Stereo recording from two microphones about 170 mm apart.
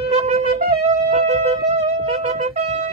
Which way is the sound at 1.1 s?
35° right (ahead or behind).